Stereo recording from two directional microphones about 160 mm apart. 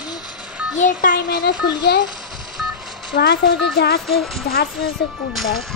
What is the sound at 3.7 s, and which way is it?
Speech, 75° left (ahead or behind).